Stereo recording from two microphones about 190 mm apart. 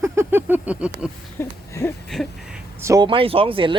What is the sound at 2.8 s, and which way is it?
Speech, 20° right (ahead or behind).